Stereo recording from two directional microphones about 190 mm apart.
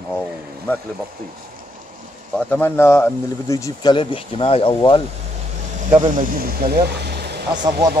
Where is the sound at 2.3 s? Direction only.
10° left (ahead or behind); by 5.0 s 25° left (ahead or behind).